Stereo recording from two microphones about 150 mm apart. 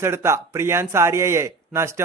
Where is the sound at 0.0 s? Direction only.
15° right (ahead or behind).